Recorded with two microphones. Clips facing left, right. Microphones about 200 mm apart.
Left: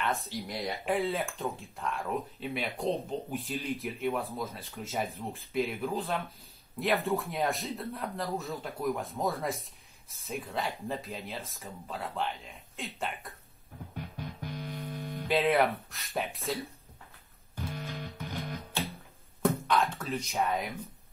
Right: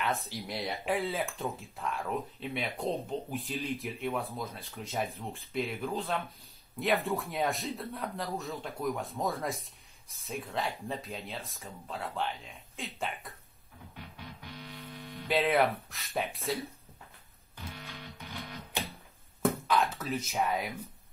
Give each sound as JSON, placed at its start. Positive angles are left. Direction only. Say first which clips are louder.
{"t": 0.0, "sound": "speech", "louder": "left 1 dB", "side_deg": 0}
{"t": 14.1, "sound": "music", "louder": "left 7 dB", "side_deg": 45}
{"t": 15.2, "sound": "speech", "louder": "left 1 dB", "side_deg": 0}
{"t": 17.7, "sound": "music", "louder": "left 6 dB", "side_deg": 45}
{"t": 19.4, "sound": "a sound", "louder": "left 1 dB", "side_deg": 0}